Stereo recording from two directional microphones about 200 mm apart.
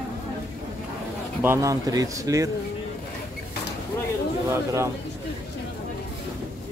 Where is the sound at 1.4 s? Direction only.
15° right (ahead or behind).